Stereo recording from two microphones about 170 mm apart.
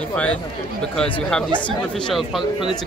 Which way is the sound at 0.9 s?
5° left (ahead or behind).